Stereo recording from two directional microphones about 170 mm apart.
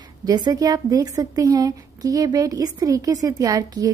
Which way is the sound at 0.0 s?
25° right (ahead or behind).